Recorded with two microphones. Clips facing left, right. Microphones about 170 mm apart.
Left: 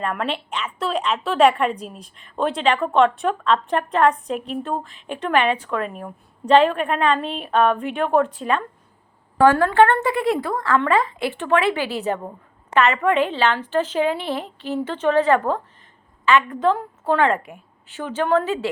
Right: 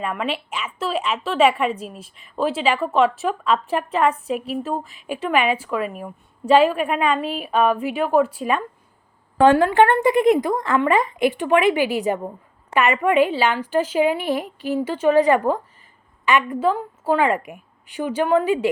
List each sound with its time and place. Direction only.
0.0 s a woman's voice: 5° right (ahead or behind)